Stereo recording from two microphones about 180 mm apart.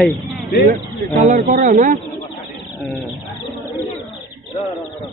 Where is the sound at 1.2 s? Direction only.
45° right (ahead or behind).